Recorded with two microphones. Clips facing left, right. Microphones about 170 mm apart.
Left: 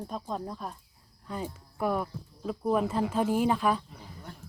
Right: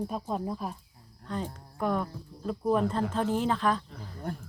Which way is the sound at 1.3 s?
10° left (ahead or behind).